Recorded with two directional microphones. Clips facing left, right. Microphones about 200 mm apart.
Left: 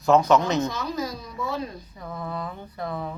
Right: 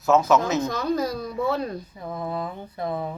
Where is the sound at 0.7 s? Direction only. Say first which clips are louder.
Right 5 dB; 55° right (ahead or behind).